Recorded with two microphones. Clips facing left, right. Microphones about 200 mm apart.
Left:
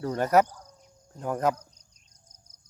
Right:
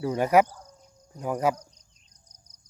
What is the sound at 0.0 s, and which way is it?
Cricket, 10° right (ahead or behind).